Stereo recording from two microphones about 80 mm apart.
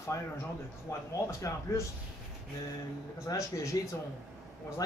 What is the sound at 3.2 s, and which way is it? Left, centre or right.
Speech, left.